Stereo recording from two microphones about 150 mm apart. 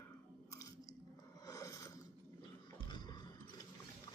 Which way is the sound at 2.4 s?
30° left (ahead or behind).